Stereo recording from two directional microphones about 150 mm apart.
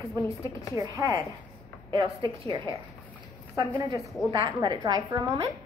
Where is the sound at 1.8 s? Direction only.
35° right (ahead or behind).